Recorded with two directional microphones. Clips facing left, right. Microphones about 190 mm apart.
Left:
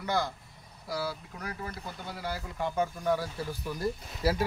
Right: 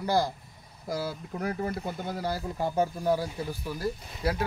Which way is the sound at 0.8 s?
50° right (ahead or behind).